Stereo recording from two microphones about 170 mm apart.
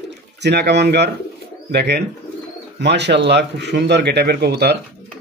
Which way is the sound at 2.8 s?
90° right.